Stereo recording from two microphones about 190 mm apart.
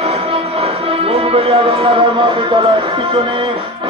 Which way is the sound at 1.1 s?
30° right (ahead or behind).